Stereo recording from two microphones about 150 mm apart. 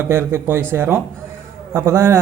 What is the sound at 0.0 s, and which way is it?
A man's voice, 15° right (ahead or behind).